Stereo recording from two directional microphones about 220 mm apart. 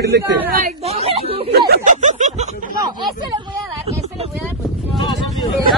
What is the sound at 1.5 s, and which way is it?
Speech, 45° right (ahead or behind).